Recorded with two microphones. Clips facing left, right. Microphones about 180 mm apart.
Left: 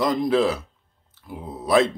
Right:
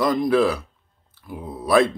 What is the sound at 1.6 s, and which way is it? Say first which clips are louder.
Speech: right 1 dB; 20° left (ahead or behind).